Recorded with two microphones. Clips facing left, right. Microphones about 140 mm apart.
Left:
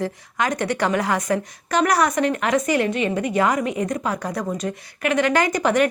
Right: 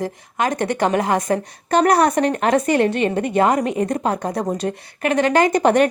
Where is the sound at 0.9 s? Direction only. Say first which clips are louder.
Right 3 dB; 25° right (ahead or behind).